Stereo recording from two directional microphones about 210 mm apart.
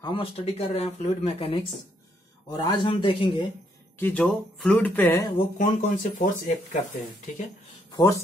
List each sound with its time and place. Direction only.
0.0 s speech: 25° left (ahead or behind)
4.0 s speech: 5° left (ahead or behind)
5.4 s speech: 35° left (ahead or behind)
7.9 s speech: 15° left (ahead or behind)